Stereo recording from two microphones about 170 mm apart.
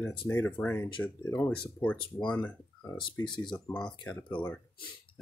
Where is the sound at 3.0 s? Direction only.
25° left (ahead or behind).